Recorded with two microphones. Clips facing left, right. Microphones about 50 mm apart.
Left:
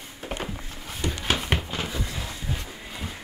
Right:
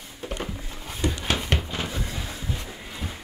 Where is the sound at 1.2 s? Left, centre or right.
Centre.